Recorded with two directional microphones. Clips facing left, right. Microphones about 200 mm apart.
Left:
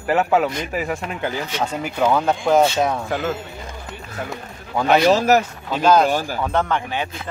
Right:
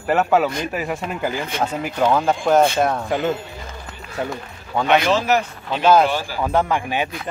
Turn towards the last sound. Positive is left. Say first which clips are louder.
# right 2 dB
turn(degrees=-15)  # may be behind; listen again after turning